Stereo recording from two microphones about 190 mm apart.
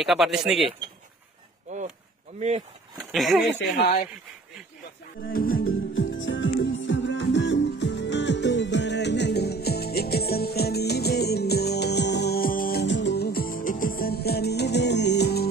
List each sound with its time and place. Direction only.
0.0 s speech: centre (ahead or behind)
2.3 s speech: 35° right (ahead or behind)
3.1 s speech: centre (ahead or behind)
5.2 s music: 50° left (ahead or behind)
5.9 s music: 85° left; by 12.8 s 50° left (ahead or behind)
12.8 s music: 70° left (ahead or behind)